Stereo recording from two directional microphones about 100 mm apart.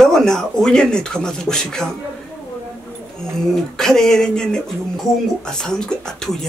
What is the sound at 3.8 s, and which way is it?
Speech, 5° left (ahead or behind).